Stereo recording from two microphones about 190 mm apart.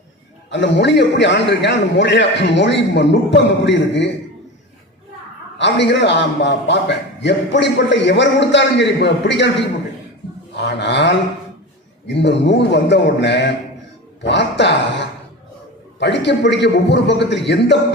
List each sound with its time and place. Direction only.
0.5 s a man's voice: 70° left (ahead or behind)
5.5 s a man's voice: 70° left (ahead or behind)
10.6 s a sound: 65° left (ahead or behind)
12.0 s a man's voice: 65° left (ahead or behind)
16.0 s a man's voice: 65° left (ahead or behind)